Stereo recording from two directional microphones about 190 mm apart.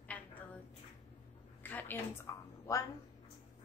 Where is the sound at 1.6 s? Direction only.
10° left (ahead or behind).